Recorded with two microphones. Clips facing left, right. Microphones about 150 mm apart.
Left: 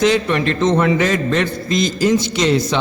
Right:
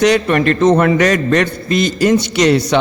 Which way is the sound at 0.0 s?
60° right (ahead or behind).